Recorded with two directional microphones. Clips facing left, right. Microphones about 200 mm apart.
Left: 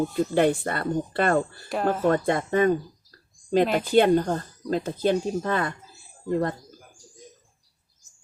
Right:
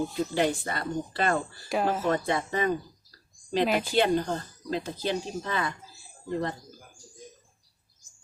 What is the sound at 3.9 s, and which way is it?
Speech, 50° left (ahead or behind).